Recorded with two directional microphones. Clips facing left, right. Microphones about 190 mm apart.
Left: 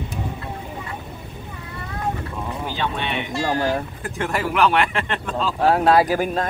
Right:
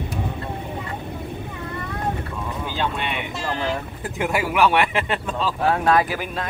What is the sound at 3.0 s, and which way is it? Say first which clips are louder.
Speech: left 3 dB; 10° right (ahead or behind).